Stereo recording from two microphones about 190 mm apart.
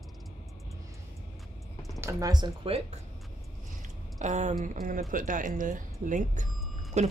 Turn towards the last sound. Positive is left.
turn(degrees=-35)  # may be behind; listen again after turning